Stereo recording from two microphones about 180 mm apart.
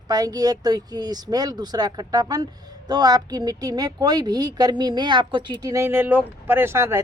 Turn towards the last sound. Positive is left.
turn(degrees=-15)  # may be behind; listen again after turning